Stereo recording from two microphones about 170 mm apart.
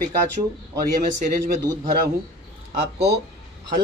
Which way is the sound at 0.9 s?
50° right (ahead or behind).